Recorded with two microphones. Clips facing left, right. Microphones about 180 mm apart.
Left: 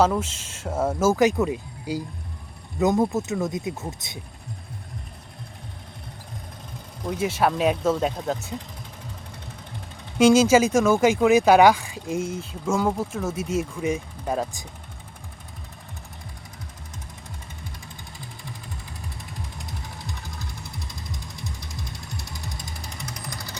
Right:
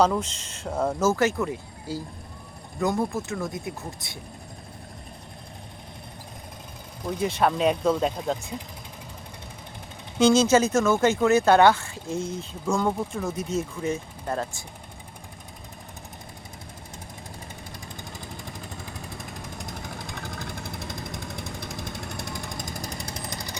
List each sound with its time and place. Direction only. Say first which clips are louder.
0.0 s speech: left 1 dB; 5° left (ahead or behind); by 4.2 s 20° left (ahead or behind)
7.0 s speech: left 1 dB; 5° left (ahead or behind)
10.2 s speech: left 3 dB; 10° left (ahead or behind)
19.1 s jackhammer: right 2 dB; 50° right (ahead or behind); by 23.6 s 20° right (ahead or behind)